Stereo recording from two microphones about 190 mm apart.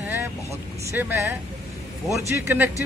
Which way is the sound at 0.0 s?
10° right (ahead or behind).